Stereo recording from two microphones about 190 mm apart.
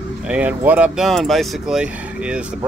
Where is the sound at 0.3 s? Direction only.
5° right (ahead or behind).